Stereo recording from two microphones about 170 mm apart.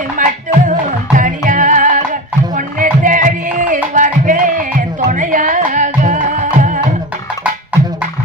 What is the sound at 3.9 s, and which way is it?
Music, 50° right (ahead or behind).